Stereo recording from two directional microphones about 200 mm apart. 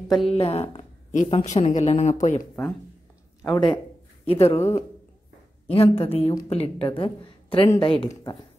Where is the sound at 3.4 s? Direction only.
25° left (ahead or behind).